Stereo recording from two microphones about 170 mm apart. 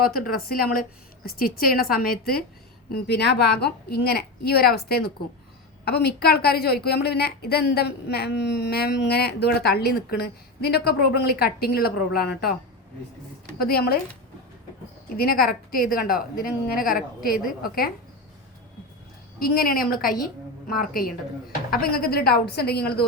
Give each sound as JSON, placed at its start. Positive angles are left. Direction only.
{"t": 0.0, "sound": "a woman's voice", "side_deg": 60}
{"t": 2.9, "sound": "a woman's voice", "side_deg": 80}
{"t": 13.6, "sound": "a woman's voice", "side_deg": 65}
{"t": 15.2, "sound": "a woman's voice", "side_deg": 60}
{"t": 19.4, "sound": "a woman's voice", "side_deg": 60}